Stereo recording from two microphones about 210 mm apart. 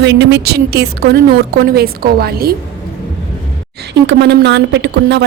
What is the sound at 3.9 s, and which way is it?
A woman's voice, 55° right (ahead or behind).